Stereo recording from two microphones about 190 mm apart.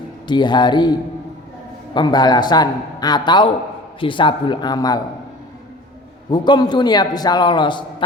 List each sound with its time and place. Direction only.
0.3 s a man's voice: 25° left (ahead or behind)
6.3 s a man's voice: 25° left (ahead or behind)